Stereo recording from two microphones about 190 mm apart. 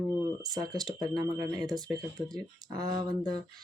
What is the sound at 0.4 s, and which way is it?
Speech, 20° right (ahead or behind).